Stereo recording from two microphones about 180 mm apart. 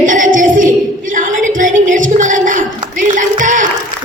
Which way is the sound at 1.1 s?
45° right (ahead or behind).